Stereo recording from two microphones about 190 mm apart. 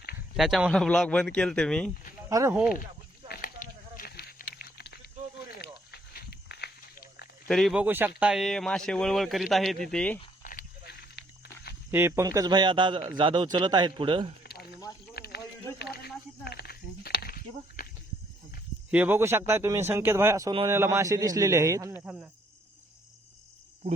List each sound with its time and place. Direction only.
0.3 s a man's voice: centre (ahead or behind)
2.3 s speech: 15° right (ahead or behind)
3.2 s a sound: 50° left (ahead or behind)
5.6 s walk: 55° left (ahead or behind)
7.4 s a man's voice: centre (ahead or behind)
10.4 s walk: 50° left (ahead or behind)
11.9 s a man's voice: 10° right (ahead or behind)
14.4 s a sound: 55° left (ahead or behind)
15.8 s snake: 55° left (ahead or behind)
18.9 s speech: 10° right (ahead or behind)
22.0 s a man's voice: 5° right (ahead or behind)